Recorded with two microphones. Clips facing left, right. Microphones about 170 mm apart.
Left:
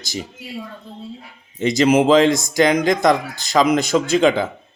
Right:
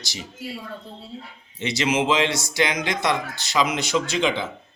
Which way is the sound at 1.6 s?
45° left (ahead or behind).